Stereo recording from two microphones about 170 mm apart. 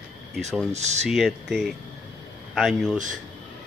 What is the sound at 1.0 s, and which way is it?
Speech, centre (ahead or behind).